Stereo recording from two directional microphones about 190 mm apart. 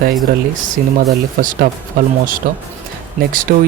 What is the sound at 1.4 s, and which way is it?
Speech, 45° right (ahead or behind).